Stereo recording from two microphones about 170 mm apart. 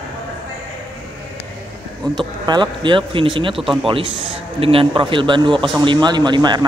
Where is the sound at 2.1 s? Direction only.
25° right (ahead or behind).